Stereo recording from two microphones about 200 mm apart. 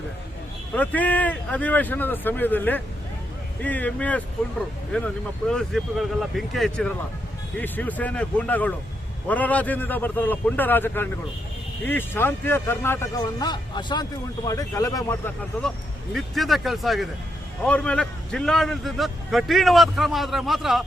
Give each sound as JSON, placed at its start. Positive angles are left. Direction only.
{"t": 0.7, "sound": "a man's voice", "side_deg": 10}
{"t": 16.1, "sound": "a man's voice", "side_deg": 0}